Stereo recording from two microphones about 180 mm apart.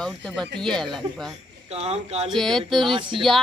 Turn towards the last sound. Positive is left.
turn(degrees=0)  # may be behind; listen again after turning